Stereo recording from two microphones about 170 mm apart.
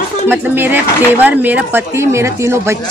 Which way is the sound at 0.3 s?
10° right (ahead or behind).